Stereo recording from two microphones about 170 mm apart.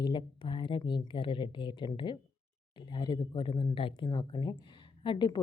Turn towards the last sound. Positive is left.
turn(degrees=25)  # may be behind; listen again after turning